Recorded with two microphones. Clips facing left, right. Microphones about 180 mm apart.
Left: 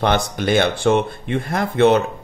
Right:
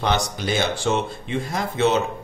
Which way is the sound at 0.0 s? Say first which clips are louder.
Left 4 dB; 55° left (ahead or behind).